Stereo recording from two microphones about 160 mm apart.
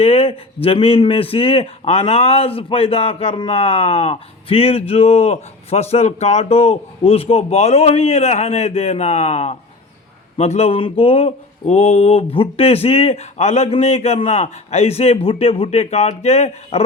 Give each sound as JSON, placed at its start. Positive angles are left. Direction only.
{"t": 0.0, "sound": "speech", "side_deg": 35}